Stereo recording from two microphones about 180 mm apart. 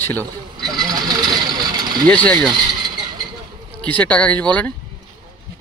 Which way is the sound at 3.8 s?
5° left (ahead or behind).